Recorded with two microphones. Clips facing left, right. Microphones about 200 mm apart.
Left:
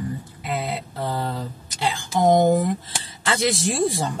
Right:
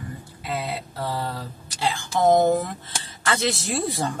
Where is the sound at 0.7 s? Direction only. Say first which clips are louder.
Left 2 dB; 20° left (ahead or behind).